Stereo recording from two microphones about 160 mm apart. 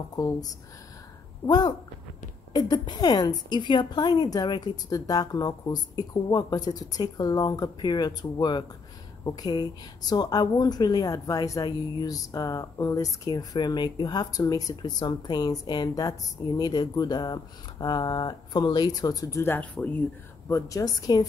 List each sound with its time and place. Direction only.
0.1 s speech: 25° left (ahead or behind)
1.5 s speech: 25° left (ahead or behind); by 20.0 s 10° left (ahead or behind)
20.4 s speech: 20° left (ahead or behind)